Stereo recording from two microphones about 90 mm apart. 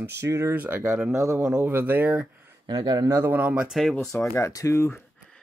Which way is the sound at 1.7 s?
20° right (ahead or behind).